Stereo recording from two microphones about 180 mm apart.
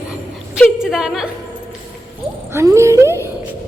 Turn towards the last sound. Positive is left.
turn(degrees=-15)  # may be behind; listen again after turning